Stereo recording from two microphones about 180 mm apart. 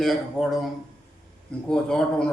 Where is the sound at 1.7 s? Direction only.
5° left (ahead or behind).